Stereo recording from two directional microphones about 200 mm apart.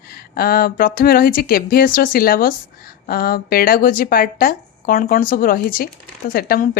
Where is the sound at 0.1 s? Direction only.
50° left (ahead or behind).